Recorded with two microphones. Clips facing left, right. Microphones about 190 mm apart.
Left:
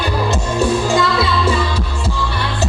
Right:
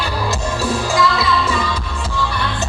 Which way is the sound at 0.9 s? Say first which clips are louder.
Left 1 dB; 30° left (ahead or behind).